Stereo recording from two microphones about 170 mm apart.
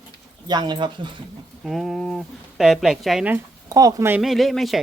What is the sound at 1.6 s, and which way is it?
Speech, centre (ahead or behind).